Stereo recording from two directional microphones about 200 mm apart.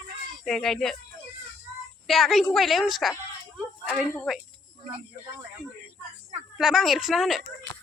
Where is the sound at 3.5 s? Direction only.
5° right (ahead or behind).